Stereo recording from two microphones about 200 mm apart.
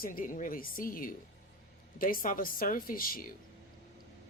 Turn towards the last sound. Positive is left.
turn(degrees=45)  # may be behind; listen again after turning